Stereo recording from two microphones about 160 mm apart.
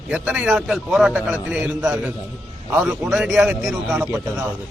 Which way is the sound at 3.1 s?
5° right (ahead or behind).